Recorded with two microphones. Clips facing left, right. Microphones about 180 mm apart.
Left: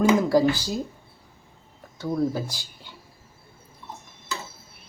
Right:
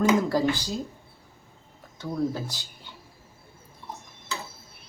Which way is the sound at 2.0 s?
10° left (ahead or behind).